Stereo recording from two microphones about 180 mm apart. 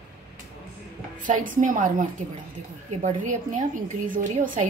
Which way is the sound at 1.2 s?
45° right (ahead or behind).